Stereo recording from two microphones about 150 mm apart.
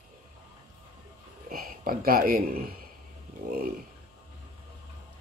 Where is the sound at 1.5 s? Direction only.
75° right (ahead or behind).